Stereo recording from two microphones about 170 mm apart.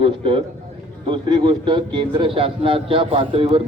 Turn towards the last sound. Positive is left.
turn(degrees=-30)  # may be behind; listen again after turning